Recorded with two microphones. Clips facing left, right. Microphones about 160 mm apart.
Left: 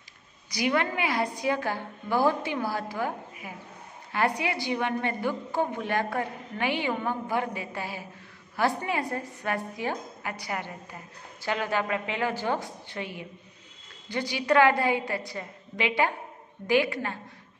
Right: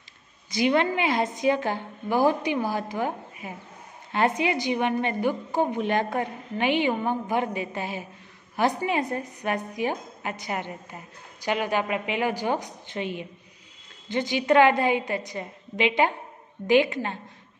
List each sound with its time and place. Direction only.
0.5 s a woman's voice: 25° right (ahead or behind)